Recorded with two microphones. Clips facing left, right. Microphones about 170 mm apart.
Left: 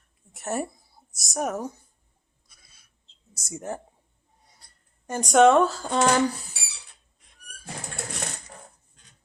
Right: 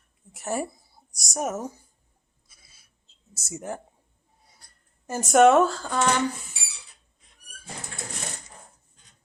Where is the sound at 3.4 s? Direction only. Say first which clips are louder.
Even; 5° right (ahead or behind).